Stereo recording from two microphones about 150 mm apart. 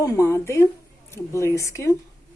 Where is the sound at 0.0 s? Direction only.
20° left (ahead or behind).